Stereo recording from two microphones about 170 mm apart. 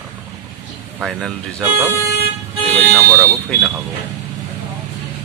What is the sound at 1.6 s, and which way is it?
Speech, 15° right (ahead or behind).